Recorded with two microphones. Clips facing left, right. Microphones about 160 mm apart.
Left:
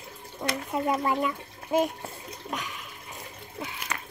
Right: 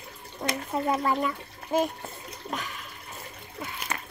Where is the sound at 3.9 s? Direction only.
30° right (ahead or behind).